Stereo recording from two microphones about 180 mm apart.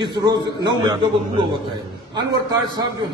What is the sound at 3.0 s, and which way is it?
Speech, 25° right (ahead or behind).